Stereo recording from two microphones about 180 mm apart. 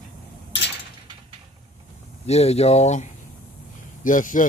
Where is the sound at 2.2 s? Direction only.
35° left (ahead or behind).